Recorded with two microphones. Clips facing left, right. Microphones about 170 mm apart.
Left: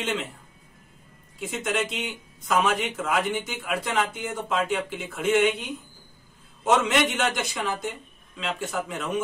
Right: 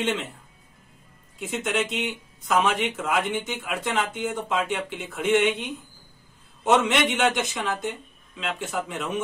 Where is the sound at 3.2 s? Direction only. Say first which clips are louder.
Even; 10° left (ahead or behind).